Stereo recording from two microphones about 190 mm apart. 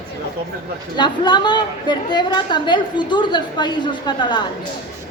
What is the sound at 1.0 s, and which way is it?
A woman's voice, 25° left (ahead or behind).